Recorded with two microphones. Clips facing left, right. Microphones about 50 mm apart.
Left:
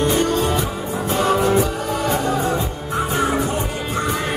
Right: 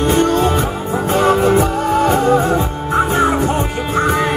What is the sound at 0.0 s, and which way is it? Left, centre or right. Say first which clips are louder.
Music: right 4 dB; right.